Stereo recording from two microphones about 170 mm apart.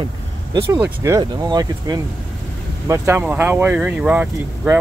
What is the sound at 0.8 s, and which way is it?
Speech, 15° right (ahead or behind).